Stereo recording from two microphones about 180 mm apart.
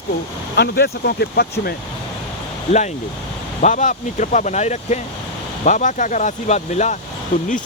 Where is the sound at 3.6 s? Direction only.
45° left (ahead or behind).